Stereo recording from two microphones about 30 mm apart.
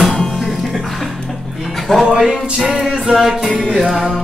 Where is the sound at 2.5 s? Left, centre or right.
Centre.